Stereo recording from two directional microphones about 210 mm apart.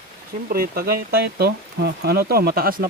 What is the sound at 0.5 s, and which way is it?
Speech, 45° right (ahead or behind).